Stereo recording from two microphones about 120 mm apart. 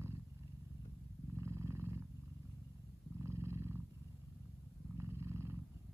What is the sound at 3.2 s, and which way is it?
Purr, 25° right (ahead or behind).